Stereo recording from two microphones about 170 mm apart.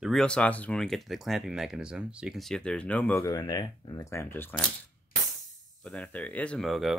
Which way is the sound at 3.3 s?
25° left (ahead or behind).